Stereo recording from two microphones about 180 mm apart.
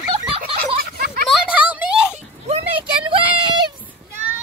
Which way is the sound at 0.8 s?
55° right (ahead or behind).